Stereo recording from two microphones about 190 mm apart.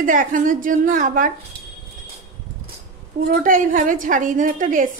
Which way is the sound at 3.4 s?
45° right (ahead or behind).